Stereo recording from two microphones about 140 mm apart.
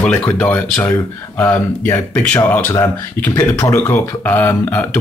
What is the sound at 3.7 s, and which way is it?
Speech, 15° left (ahead or behind).